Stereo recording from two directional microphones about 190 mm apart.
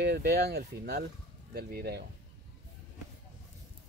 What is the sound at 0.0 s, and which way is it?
Speech, 60° right (ahead or behind).